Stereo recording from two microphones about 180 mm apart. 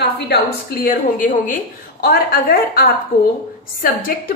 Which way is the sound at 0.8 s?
45° left (ahead or behind).